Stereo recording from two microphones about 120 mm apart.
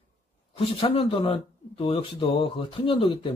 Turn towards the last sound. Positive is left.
turn(degrees=50)  # may be behind; listen again after turning